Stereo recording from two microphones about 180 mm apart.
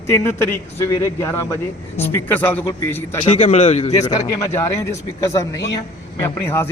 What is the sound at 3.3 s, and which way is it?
Speech, 35° left (ahead or behind).